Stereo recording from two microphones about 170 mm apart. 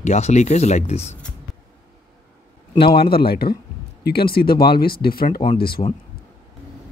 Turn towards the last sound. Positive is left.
turn(degrees=35)  # may be behind; listen again after turning